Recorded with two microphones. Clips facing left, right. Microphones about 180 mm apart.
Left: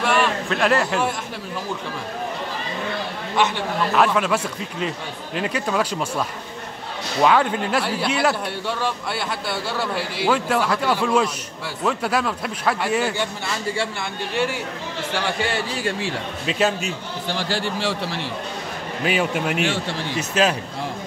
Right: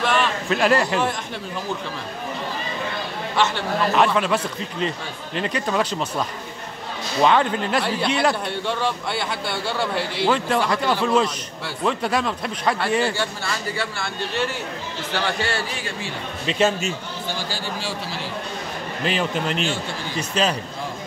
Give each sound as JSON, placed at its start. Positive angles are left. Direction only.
{"t": 0.0, "sound": "a sound", "side_deg": 10}
{"t": 0.5, "sound": "a man's voice", "side_deg": 0}
{"t": 3.3, "sound": "speech", "side_deg": 15}
{"t": 3.9, "sound": "a man's voice", "side_deg": 5}
{"t": 7.2, "sound": "a man's voice", "side_deg": 5}
{"t": 13.7, "sound": "speech", "side_deg": 15}
{"t": 16.4, "sound": "a man's voice", "side_deg": 0}
{"t": 17.3, "sound": "a man's voice", "side_deg": 75}
{"t": 19.0, "sound": "speech", "side_deg": 10}
{"t": 19.6, "sound": "speech", "side_deg": 80}
{"t": 20.2, "sound": "a man's voice", "side_deg": 5}